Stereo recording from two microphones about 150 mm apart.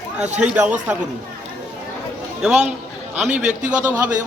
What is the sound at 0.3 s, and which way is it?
Speech, 5° right (ahead or behind).